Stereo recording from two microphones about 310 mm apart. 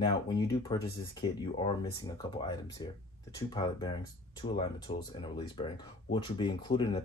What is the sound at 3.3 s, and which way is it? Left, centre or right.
Speech, centre.